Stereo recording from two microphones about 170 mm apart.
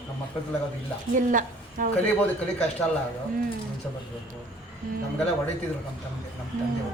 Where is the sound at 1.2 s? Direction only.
50° right (ahead or behind).